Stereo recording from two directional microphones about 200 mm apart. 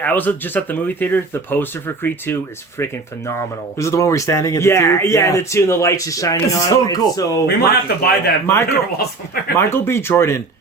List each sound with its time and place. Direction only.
0.0 s speech: 10° left (ahead or behind)
7.4 s speech: 50° left (ahead or behind)
8.4 s speech: 10° left (ahead or behind)